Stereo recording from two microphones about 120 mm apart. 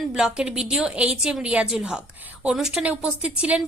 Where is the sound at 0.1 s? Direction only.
5° right (ahead or behind).